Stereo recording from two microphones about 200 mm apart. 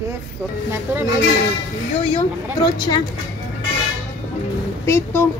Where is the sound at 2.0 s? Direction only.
25° left (ahead or behind).